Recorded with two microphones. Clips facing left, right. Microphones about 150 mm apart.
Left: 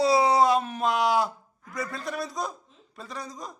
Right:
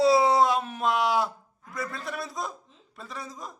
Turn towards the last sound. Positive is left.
turn(degrees=0)  # may be behind; listen again after turning